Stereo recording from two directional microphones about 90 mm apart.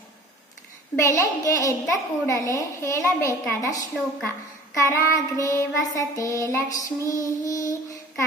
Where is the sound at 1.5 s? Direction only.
40° left (ahead or behind).